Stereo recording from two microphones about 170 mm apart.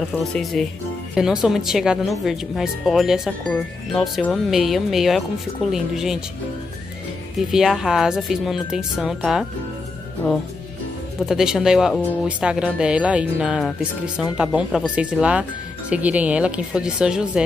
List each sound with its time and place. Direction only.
0.2 s speech: centre (ahead or behind)
7.3 s speech: centre (ahead or behind)
11.1 s speech: centre (ahead or behind)